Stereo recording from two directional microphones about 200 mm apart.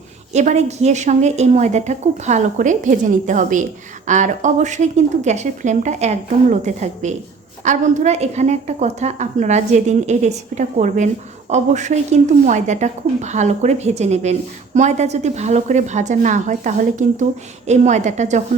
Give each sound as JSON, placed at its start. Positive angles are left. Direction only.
{"t": 0.3, "sound": "a woman's voice", "side_deg": -35}